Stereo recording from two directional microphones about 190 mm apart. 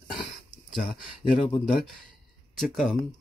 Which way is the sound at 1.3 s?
30° left (ahead or behind).